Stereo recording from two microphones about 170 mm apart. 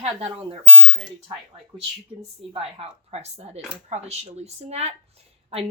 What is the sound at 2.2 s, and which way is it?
Speech, 35° right (ahead or behind).